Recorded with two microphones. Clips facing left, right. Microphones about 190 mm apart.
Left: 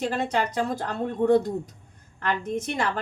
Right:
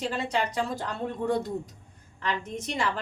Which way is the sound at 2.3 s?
50° left (ahead or behind).